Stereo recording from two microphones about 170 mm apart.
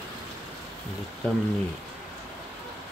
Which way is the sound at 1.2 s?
10° left (ahead or behind).